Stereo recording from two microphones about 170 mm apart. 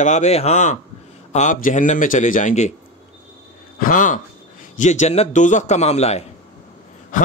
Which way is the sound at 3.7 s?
50° left (ahead or behind).